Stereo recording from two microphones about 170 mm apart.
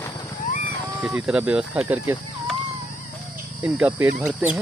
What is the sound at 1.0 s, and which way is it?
Speech, 5° right (ahead or behind).